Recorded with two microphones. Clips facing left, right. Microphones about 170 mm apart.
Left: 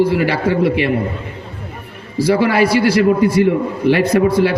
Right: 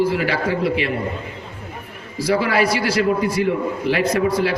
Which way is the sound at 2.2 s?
60° left (ahead or behind).